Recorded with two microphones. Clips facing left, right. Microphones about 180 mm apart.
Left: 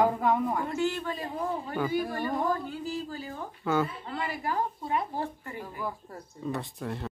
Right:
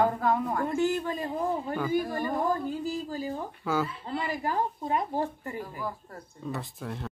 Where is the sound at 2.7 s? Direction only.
40° right (ahead or behind).